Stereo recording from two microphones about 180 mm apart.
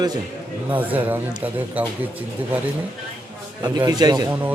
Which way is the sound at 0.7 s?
10° right (ahead or behind).